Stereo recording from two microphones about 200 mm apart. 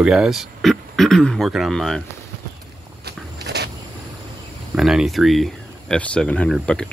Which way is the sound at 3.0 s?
55° right (ahead or behind).